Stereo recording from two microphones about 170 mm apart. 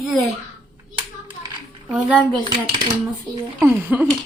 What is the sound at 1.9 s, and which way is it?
Speech, 5° right (ahead or behind).